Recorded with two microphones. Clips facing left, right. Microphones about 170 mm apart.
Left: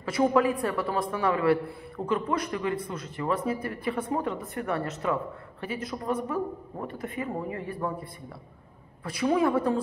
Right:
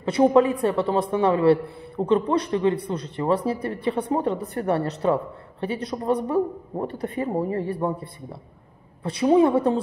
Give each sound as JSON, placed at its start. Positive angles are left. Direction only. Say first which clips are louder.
{"t": 0.0, "sound": "a man's voice", "louder": "right 6 dB", "side_deg": -25}